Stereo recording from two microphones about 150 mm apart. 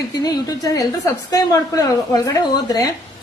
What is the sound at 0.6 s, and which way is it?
A woman's voice, 25° left (ahead or behind).